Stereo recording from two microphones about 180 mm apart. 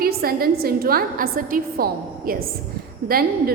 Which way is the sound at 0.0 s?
55° right (ahead or behind).